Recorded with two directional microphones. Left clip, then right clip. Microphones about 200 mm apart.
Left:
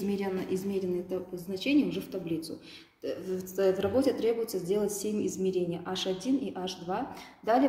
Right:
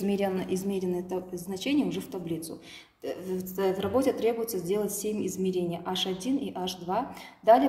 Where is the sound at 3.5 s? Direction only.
45° right (ahead or behind).